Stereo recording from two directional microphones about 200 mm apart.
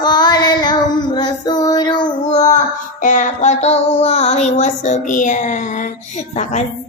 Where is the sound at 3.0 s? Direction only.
35° left (ahead or behind).